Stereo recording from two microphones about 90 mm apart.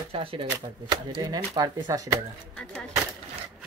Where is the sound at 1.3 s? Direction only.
45° right (ahead or behind).